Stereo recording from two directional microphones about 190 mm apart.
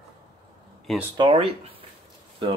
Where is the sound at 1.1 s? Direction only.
30° right (ahead or behind).